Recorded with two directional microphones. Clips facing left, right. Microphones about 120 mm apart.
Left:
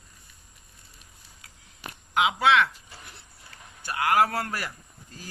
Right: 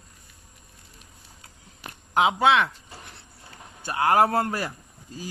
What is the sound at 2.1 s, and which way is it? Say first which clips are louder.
Speech: right 2 dB; 35° right (ahead or behind).